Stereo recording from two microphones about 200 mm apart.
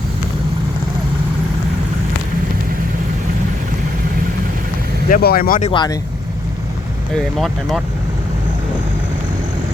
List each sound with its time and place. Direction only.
5.0 s speech: 45° left (ahead or behind)
5.7 s speech: 20° left (ahead or behind)
7.1 s speech: centre (ahead or behind)